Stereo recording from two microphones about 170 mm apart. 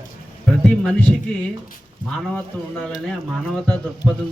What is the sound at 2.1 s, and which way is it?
A man's voice, 5° left (ahead or behind).